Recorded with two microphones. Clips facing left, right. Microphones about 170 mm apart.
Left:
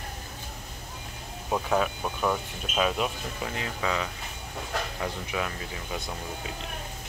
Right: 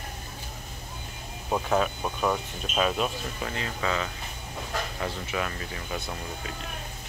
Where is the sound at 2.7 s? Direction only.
10° left (ahead or behind).